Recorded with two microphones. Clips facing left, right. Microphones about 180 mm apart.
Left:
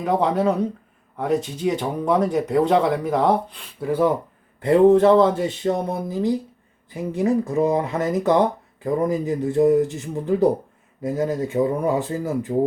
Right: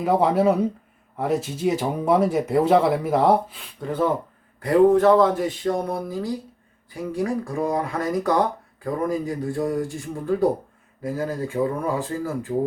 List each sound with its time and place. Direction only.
0.0 s speech: 5° right (ahead or behind)
3.8 s speech: 10° left (ahead or behind)
4.6 s speech: 25° left (ahead or behind)